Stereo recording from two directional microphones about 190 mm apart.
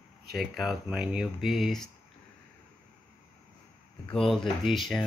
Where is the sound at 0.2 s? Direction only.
55° right (ahead or behind).